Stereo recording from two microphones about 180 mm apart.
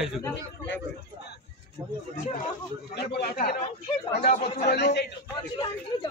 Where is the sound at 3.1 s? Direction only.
60° left (ahead or behind).